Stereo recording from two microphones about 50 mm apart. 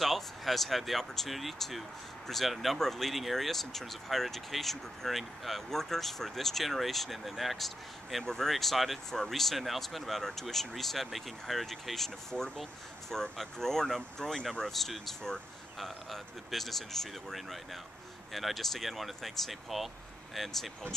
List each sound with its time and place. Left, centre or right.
0.0 s speech: centre
14.7 s speech: centre